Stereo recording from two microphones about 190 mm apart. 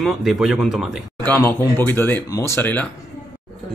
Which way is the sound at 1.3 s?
15° left (ahead or behind).